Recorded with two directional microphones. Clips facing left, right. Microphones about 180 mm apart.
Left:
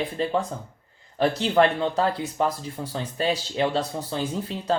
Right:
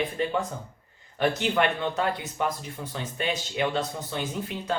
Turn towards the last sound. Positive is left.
turn(degrees=30)  # may be behind; listen again after turning